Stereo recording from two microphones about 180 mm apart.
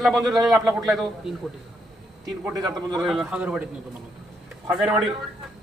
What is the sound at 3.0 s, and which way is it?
Speech, centre (ahead or behind).